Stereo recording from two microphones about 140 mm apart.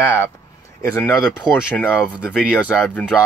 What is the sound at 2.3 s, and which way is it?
Speech, 10° left (ahead or behind).